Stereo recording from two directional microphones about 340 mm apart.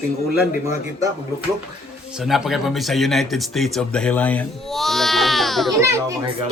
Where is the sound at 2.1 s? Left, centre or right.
Centre.